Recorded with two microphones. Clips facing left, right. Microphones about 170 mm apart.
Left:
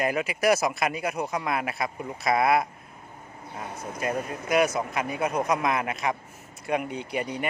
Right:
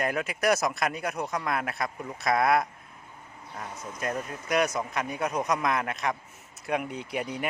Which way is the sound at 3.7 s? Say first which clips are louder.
Left 3 dB; 60° left (ahead or behind).